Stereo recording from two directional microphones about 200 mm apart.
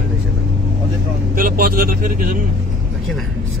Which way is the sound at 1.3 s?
45° right (ahead or behind).